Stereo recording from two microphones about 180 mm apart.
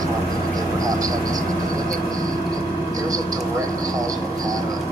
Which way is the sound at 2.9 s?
20° right (ahead or behind).